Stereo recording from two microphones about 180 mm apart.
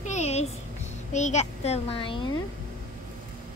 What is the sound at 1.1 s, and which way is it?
A child's voice, 40° left (ahead or behind).